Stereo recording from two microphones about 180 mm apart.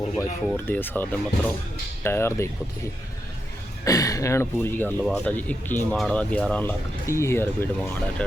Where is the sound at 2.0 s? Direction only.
15° left (ahead or behind).